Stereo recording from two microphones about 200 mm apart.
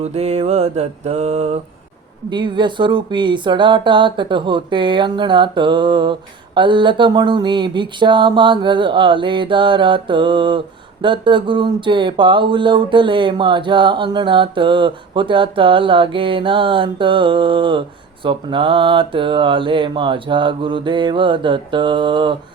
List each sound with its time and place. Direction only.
0.0 s mantra: 30° right (ahead or behind)
2.3 s speech: 25° right (ahead or behind)